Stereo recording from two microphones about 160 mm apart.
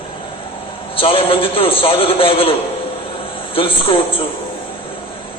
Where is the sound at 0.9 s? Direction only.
35° left (ahead or behind).